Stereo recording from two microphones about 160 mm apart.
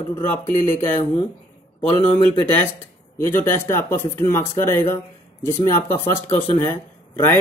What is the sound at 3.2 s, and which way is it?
Speech, 15° left (ahead or behind).